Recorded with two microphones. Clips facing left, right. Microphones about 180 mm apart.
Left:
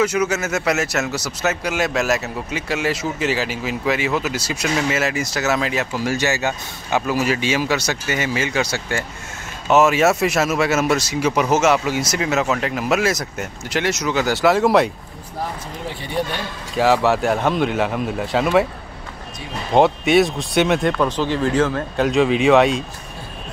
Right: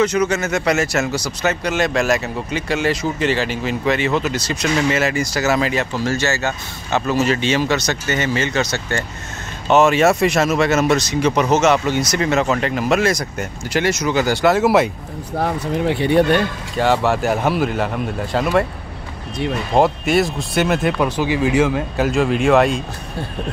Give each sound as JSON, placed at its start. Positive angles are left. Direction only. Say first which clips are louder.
{"t": 0.0, "sound": "speech", "louder": "right 2 dB", "side_deg": 5}
{"t": 15.3, "sound": "speech", "louder": "right 8 dB", "side_deg": -70}
{"t": 16.7, "sound": "speech", "louder": "left 1 dB", "side_deg": 0}
{"t": 19.7, "sound": "speech", "louder": "left 2 dB", "side_deg": 0}